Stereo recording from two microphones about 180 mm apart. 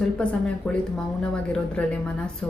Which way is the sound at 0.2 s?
5° left (ahead or behind).